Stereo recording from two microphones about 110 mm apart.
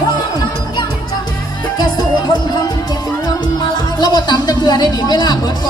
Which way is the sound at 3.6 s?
40° left (ahead or behind).